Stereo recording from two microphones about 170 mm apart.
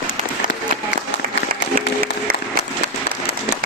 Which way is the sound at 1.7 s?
60° right (ahead or behind).